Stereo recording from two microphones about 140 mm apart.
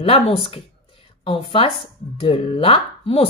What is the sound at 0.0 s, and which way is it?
Speech, 45° left (ahead or behind).